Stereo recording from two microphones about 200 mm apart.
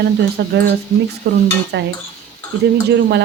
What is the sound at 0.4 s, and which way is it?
Speech, 55° right (ahead or behind).